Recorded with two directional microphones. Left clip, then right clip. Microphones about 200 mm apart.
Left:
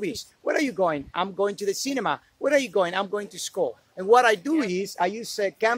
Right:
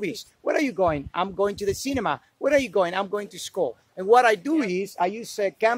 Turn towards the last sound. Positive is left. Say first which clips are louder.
# right 1 dB
turn(degrees=-15)  # may be behind; listen again after turning